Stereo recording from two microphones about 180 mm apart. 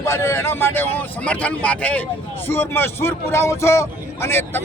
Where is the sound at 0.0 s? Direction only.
15° left (ahead or behind).